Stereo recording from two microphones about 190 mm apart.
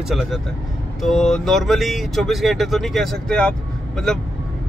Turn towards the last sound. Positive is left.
turn(degrees=5)  # may be behind; listen again after turning